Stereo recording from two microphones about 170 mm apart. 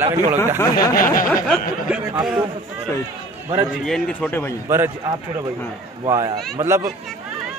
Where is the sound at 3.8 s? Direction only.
5° left (ahead or behind).